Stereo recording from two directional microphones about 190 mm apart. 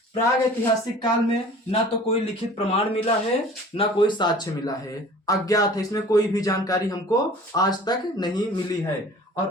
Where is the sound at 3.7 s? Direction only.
25° left (ahead or behind).